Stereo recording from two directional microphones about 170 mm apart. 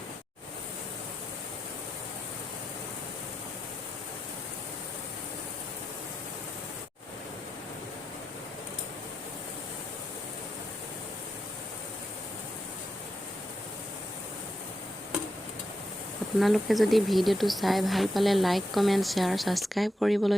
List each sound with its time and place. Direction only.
16.4 s speech: centre (ahead or behind)